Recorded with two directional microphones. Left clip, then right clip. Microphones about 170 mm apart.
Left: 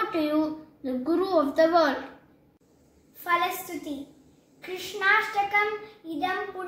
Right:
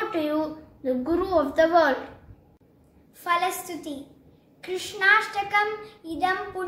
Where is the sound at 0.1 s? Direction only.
20° right (ahead or behind).